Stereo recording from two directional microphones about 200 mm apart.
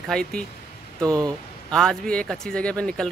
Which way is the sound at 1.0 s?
20° right (ahead or behind).